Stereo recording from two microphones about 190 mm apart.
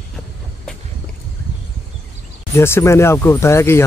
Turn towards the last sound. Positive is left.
turn(degrees=15)  # may be behind; listen again after turning